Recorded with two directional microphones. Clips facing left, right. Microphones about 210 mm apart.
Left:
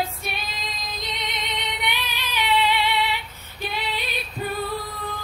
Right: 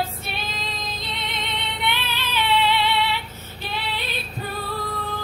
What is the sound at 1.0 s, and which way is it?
Music, 15° left (ahead or behind).